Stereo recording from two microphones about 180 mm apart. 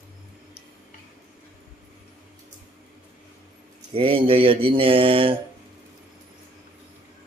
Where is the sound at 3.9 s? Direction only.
30° right (ahead or behind).